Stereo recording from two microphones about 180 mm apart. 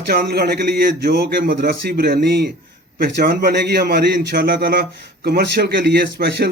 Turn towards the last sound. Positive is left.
turn(degrees=-65)  # may be behind; listen again after turning